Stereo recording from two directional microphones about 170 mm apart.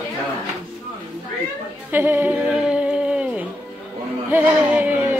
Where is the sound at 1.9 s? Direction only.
10° right (ahead or behind).